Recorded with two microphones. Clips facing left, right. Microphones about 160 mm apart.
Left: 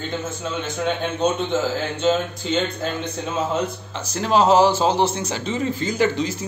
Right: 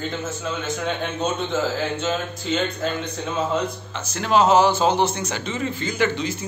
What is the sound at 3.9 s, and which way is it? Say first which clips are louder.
A man's voice: even; 30° left (ahead or behind).